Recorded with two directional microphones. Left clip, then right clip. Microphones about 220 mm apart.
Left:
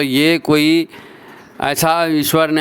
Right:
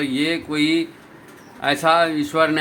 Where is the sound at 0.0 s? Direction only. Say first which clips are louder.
Left 8 dB; 55° left (ahead or behind).